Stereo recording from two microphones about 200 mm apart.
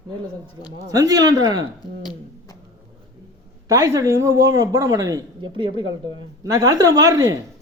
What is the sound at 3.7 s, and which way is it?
Speech, 15° right (ahead or behind).